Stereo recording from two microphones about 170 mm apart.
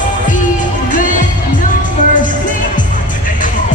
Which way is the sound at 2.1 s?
50° left (ahead or behind).